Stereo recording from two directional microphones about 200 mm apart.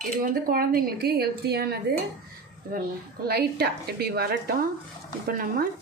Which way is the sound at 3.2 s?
50° right (ahead or behind).